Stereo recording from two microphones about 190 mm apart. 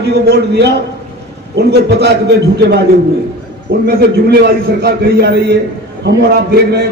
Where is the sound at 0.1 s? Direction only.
60° right (ahead or behind).